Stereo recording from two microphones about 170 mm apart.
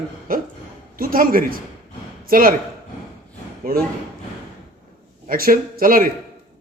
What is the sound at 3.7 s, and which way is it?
Speech, 60° right (ahead or behind).